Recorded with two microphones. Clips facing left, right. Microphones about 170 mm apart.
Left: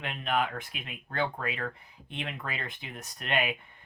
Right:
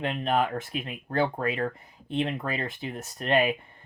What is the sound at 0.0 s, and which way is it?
Speech, 35° right (ahead or behind).